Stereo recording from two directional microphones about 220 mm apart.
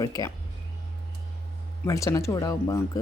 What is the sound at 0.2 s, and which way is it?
Speech, 15° left (ahead or behind).